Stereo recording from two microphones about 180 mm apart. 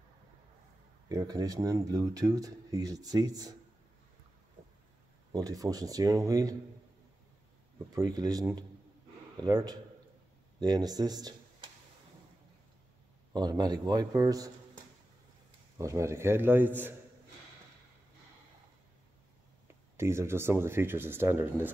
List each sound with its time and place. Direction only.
1.0 s speech: 20° right (ahead or behind)
5.3 s speech: 20° right (ahead or behind)
7.9 s speech: 20° right (ahead or behind)
13.3 s speech: 20° right (ahead or behind)
15.8 s speech: 15° right (ahead or behind)
20.0 s speech: 15° right (ahead or behind)